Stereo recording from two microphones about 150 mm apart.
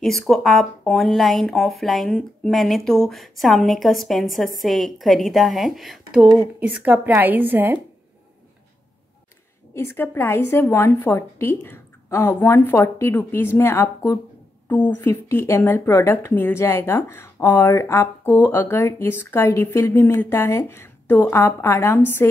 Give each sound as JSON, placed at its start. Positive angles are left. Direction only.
{"t": 0.3, "sound": "a woman's voice", "side_deg": 0}
{"t": 9.8, "sound": "a woman's voice", "side_deg": 15}